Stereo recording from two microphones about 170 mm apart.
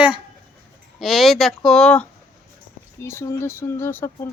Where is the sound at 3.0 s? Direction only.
15° left (ahead or behind).